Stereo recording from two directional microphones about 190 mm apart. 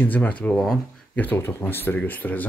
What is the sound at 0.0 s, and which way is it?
Speech, 10° left (ahead or behind).